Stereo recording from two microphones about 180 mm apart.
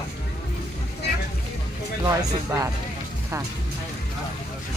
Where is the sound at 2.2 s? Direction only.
20° right (ahead or behind).